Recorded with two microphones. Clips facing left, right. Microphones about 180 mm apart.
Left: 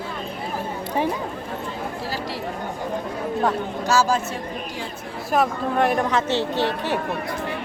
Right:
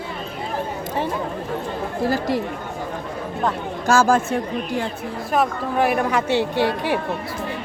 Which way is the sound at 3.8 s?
50° right (ahead or behind).